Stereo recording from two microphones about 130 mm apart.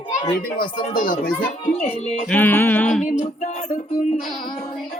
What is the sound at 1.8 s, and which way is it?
Speech, 55° left (ahead or behind).